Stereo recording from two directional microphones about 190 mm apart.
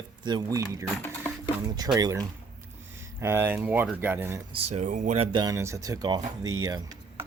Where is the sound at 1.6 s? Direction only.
20° right (ahead or behind).